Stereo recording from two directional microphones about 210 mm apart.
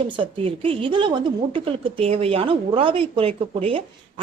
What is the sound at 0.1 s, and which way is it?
A woman's voice, 25° right (ahead or behind).